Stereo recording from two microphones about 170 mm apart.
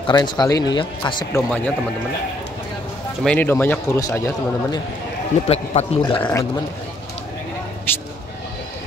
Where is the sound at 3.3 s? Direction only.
10° left (ahead or behind).